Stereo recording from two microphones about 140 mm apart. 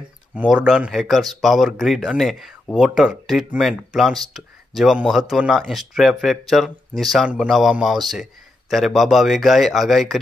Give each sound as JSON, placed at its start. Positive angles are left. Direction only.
{"t": 0.3, "sound": "speech", "side_deg": -10}